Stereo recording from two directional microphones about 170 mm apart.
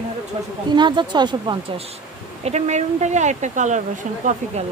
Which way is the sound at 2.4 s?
40° right (ahead or behind).